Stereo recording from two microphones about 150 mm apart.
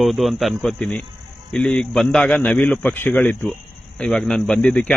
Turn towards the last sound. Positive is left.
turn(degrees=10)  # may be behind; listen again after turning